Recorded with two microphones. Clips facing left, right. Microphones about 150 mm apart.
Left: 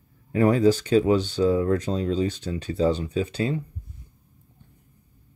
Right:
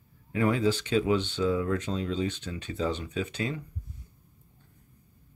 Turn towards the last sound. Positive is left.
turn(degrees=35)  # may be behind; listen again after turning